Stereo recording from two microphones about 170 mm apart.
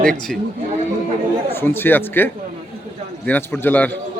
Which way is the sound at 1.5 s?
15° left (ahead or behind).